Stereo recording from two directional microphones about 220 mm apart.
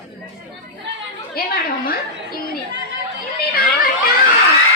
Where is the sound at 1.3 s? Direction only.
40° left (ahead or behind).